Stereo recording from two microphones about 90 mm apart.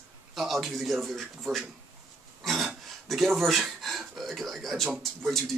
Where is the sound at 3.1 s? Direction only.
Centre (ahead or behind).